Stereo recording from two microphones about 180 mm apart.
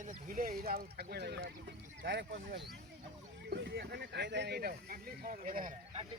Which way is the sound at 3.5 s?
65° right (ahead or behind).